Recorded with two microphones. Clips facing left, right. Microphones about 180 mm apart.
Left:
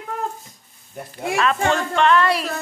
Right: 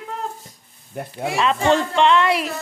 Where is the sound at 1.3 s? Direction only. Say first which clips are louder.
Right 2 dB; 25° right (ahead or behind).